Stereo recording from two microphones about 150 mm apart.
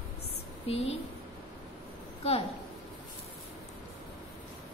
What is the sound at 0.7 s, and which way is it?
Speech, 40° left (ahead or behind).